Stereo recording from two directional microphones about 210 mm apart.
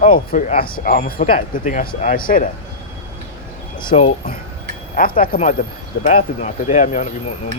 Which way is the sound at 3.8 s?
25° left (ahead or behind).